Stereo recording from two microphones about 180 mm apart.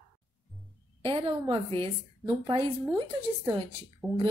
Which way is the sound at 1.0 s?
30° right (ahead or behind).